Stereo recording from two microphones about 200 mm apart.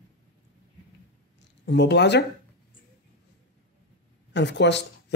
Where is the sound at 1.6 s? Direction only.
60° left (ahead or behind).